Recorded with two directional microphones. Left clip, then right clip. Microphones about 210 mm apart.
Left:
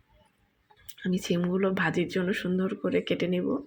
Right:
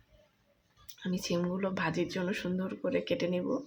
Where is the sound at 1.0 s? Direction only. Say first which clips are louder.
Left 4 dB; 15° left (ahead or behind).